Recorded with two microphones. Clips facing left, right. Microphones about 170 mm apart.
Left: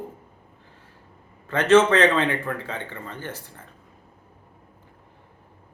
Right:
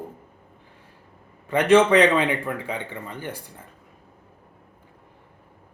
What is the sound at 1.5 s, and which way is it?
Speech, 15° right (ahead or behind).